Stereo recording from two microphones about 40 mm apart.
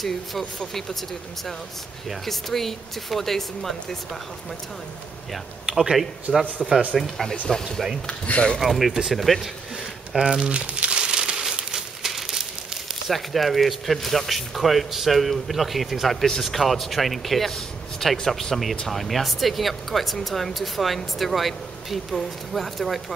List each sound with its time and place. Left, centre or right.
0.0 s speech: centre
2.0 s speech: centre
5.7 s speech: centre
6.3 s speech: right
6.9 s speech: centre
8.3 s speech: left
8.5 s speech: centre
10.4 s crumpling: right; by 12.4 s centre
13.1 s speech: centre